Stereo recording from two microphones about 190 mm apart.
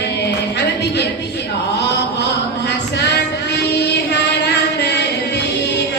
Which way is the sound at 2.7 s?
65° left (ahead or behind).